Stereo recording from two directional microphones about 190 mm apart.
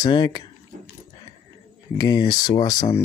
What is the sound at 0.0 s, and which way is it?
Speech, 20° left (ahead or behind).